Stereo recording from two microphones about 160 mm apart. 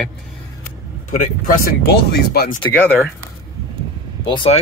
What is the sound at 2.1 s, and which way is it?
Speech, 80° left.